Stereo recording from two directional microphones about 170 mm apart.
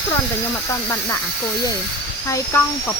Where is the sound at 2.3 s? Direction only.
20° left (ahead or behind).